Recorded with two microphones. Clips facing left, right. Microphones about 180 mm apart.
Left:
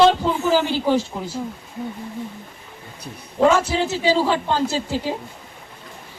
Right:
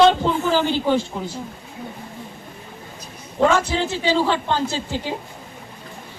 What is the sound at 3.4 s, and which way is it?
A man's voice, 5° left (ahead or behind).